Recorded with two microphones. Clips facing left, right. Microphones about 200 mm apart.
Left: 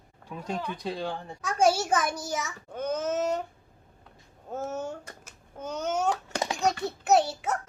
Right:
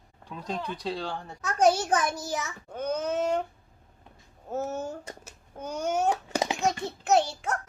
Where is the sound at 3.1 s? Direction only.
40° left (ahead or behind).